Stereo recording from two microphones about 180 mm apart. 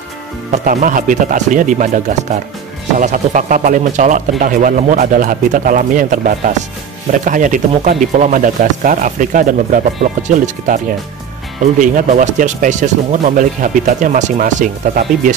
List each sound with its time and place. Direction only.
0.5 s speech: 45° right (ahead or behind)
11.8 s speech: 45° right (ahead or behind)